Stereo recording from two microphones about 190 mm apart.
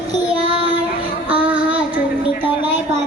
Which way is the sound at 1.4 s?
10° right (ahead or behind).